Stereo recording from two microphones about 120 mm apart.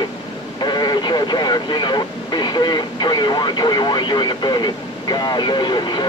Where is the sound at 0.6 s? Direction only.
35° left (ahead or behind).